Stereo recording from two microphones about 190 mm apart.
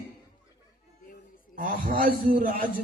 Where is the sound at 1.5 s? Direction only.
45° right (ahead or behind).